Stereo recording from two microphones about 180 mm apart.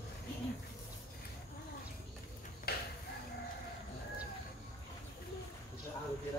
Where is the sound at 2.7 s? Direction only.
60° left (ahead or behind).